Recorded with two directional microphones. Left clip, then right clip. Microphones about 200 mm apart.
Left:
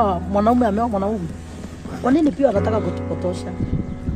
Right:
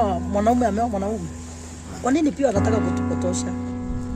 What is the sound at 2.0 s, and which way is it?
Speech, 15° right (ahead or behind).